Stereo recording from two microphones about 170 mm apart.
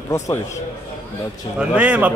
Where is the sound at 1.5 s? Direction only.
5° right (ahead or behind).